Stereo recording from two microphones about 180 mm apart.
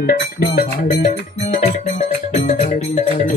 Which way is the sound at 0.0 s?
55° left (ahead or behind).